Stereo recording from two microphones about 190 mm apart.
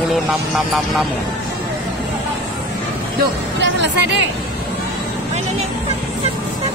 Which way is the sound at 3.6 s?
70° right (ahead or behind).